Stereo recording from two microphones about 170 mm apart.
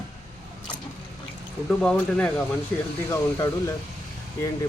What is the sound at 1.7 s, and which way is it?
Speech, 5° left (ahead or behind).